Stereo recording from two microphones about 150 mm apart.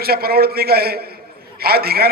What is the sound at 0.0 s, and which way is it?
A man's voice, 90° right.